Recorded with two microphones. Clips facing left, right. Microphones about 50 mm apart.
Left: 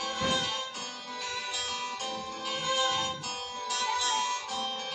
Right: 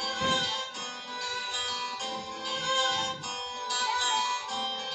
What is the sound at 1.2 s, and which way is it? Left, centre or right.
Music, left.